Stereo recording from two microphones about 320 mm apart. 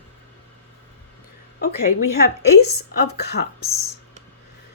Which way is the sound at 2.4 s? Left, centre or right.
Left.